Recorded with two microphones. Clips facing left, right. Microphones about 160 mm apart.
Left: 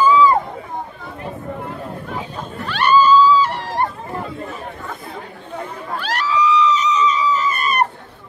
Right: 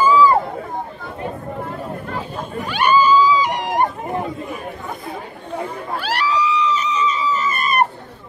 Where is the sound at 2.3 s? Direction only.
10° right (ahead or behind).